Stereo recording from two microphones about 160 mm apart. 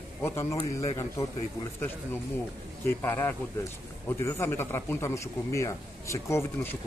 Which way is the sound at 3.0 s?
15° left (ahead or behind).